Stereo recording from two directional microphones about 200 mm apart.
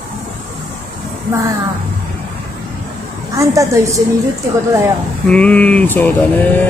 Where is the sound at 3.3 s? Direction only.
15° right (ahead or behind).